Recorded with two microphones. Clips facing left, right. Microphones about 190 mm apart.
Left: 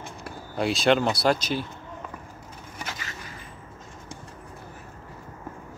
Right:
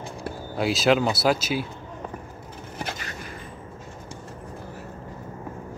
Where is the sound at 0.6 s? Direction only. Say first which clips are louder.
Right 1 dB; centre (ahead or behind).